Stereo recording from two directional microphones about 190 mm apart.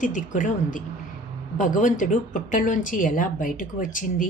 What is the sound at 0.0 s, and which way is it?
A woman's voice, 40° left (ahead or behind).